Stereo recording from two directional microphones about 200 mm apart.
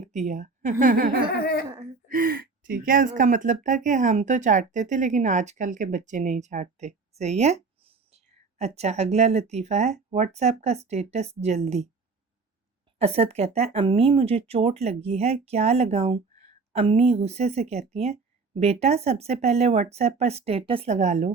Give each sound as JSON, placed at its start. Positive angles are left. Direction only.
{"t": 0.0, "sound": "a woman's voice", "side_deg": -35}
{"t": 13.0, "sound": "speech", "side_deg": -30}